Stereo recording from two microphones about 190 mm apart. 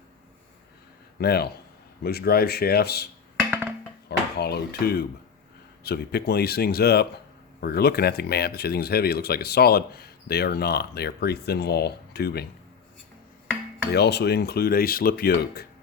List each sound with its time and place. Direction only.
1.2 s speech: 55° left (ahead or behind)
4.4 s speech: 55° left (ahead or behind)
13.9 s speech: 60° left (ahead or behind)